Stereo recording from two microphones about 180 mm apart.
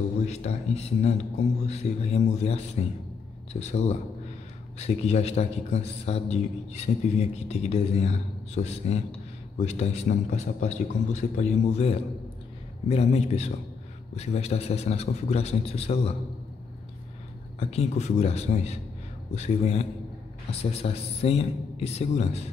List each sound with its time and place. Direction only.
0.3 s a man's voice: 35° left (ahead or behind)
17.6 s a man's voice: 35° left (ahead or behind)